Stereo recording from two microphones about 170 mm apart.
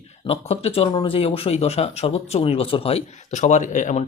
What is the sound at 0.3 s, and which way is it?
Speech, 35° left (ahead or behind).